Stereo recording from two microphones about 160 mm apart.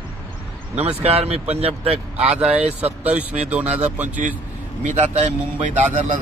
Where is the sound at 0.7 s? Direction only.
40° right (ahead or behind).